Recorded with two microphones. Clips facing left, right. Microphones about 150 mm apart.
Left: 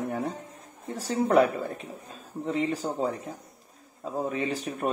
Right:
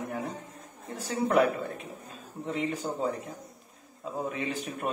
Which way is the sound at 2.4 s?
35° left (ahead or behind).